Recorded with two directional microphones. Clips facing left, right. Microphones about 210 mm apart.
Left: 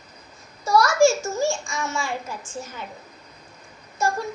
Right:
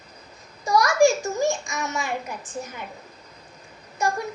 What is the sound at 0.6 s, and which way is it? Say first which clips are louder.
A child's voice: left 1 dB; 15° right (ahead or behind).